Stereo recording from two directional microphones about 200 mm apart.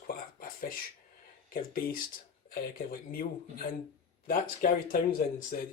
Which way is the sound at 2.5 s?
45° left (ahead or behind).